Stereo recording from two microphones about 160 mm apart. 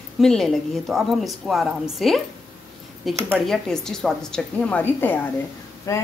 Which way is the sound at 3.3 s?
5° left (ahead or behind).